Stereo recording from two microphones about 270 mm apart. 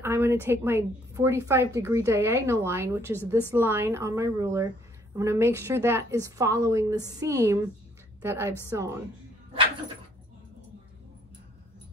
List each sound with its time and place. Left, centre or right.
0.0 s a woman's voice: centre